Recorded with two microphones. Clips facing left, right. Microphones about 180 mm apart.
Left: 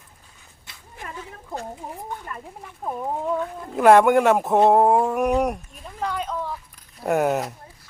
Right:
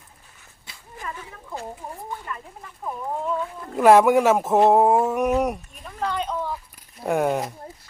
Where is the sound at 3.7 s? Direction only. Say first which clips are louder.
Even; centre (ahead or behind).